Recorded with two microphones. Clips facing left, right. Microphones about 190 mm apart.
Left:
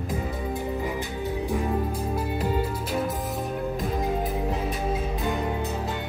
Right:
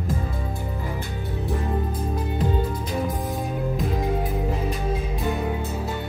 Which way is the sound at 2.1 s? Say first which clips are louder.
Right 2 dB; 5° left (ahead or behind).